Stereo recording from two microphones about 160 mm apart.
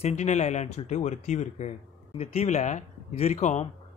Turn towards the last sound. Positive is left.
turn(degrees=45)  # may be behind; listen again after turning